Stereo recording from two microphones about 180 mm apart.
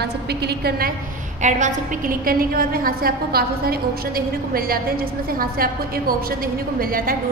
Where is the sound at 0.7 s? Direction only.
55° right (ahead or behind).